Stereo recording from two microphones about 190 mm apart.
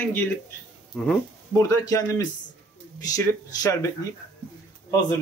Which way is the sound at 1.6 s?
15° left (ahead or behind).